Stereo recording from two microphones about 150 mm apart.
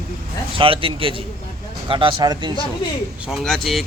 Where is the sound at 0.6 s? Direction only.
35° right (ahead or behind).